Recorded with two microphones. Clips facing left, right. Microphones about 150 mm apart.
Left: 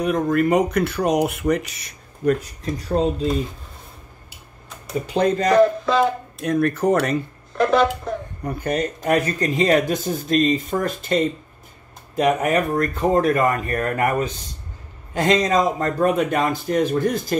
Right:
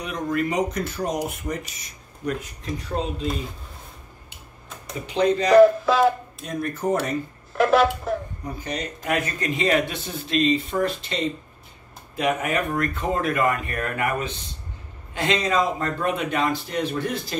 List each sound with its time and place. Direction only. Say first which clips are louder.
0.0 s speech: left 7 dB; 50° left (ahead or behind); by 2.0 s 75° left (ahead or behind)
2.6 s speech: left 6 dB; 35° left (ahead or behind)
5.0 s speech: left 1 dB; 45° left (ahead or behind)
5.6 s a sound: right 4 dB; 5° right (ahead or behind)
6.4 s speech: left 7 dB; 70° left (ahead or behind)
7.5 s a sound: left 1 dB; 5° right (ahead or behind)
8.5 s speech: left 8 dB; 55° left (ahead or behind)